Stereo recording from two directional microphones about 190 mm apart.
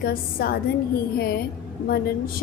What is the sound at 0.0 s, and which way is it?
Speech, 50° left (ahead or behind).